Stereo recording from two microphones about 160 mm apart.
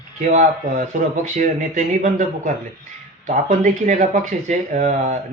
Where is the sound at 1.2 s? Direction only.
50° right (ahead or behind).